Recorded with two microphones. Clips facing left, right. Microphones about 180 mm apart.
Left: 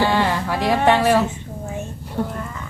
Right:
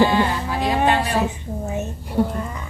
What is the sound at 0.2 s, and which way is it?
Music, 75° left (ahead or behind).